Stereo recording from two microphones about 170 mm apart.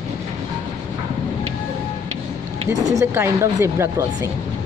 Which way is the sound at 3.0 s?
15° right (ahead or behind).